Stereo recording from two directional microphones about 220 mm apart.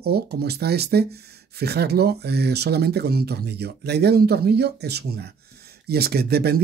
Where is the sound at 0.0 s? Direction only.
45° right (ahead or behind).